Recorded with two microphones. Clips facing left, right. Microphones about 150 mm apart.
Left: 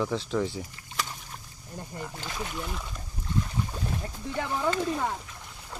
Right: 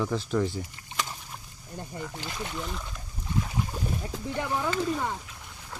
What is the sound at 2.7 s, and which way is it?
Speech, centre (ahead or behind).